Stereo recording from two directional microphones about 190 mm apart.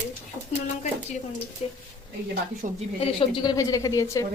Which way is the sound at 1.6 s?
35° left (ahead or behind).